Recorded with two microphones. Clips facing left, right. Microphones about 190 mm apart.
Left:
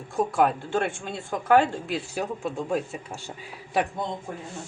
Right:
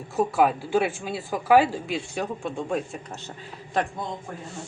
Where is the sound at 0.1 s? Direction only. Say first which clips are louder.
Right 1 dB; 5° right (ahead or behind).